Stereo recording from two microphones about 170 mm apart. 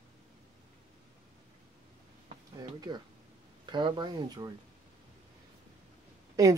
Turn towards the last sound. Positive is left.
turn(degrees=-20)  # may be behind; listen again after turning